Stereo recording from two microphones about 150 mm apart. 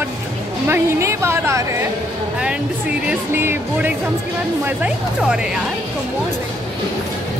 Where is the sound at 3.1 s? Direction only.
15° right (ahead or behind).